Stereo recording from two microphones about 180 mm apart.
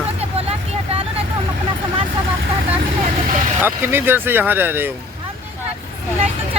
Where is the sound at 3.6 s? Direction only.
10° right (ahead or behind).